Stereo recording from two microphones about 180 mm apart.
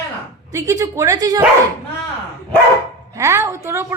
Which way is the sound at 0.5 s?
20° right (ahead or behind).